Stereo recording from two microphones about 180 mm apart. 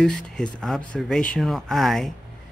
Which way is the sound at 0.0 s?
5° left (ahead or behind).